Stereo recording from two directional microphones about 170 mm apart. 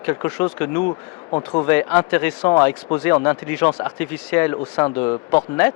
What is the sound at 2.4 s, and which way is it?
Speech, 25° left (ahead or behind).